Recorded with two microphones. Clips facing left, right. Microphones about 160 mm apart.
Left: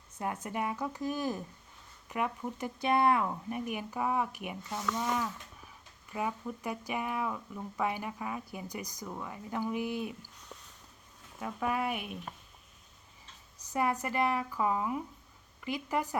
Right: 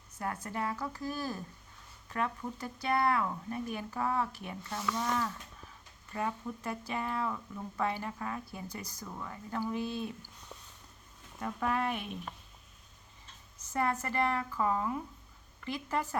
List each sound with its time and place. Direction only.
0.2 s speech: 20° left (ahead or behind)
11.3 s speech: 5° left (ahead or behind)
13.6 s speech: 15° left (ahead or behind)